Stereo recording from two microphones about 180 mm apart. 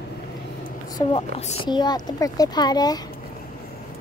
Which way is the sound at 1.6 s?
25° left (ahead or behind).